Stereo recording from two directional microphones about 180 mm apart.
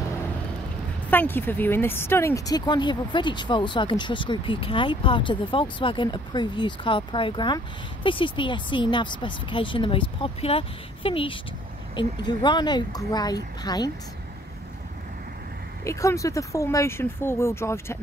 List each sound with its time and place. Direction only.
1.1 s speech: 10° left (ahead or behind)
15.8 s speech: 15° left (ahead or behind)